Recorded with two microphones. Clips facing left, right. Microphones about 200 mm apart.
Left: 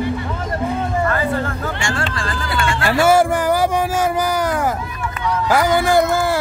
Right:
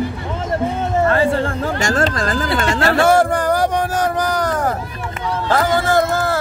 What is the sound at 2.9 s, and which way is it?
Speech, 10° left (ahead or behind).